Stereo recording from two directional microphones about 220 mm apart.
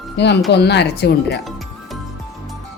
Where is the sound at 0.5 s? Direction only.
50° left (ahead or behind).